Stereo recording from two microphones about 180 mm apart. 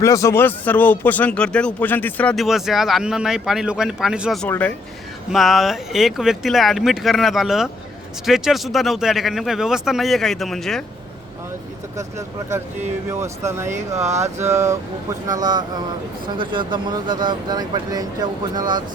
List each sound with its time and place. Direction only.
0.0 s speech: 15° left (ahead or behind); by 4.4 s centre (ahead or behind)
4.4 s speech: 10° left (ahead or behind)
5.3 s speech: centre (ahead or behind)
12.5 s speech: 15° right (ahead or behind)